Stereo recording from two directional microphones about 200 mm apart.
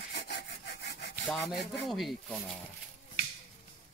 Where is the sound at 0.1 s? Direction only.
55° left (ahead or behind).